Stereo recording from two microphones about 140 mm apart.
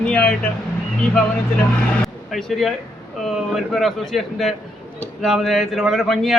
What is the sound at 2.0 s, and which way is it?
A man's voice, centre (ahead or behind).